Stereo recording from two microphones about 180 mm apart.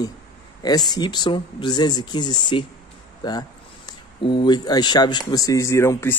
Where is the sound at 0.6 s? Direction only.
20° left (ahead or behind).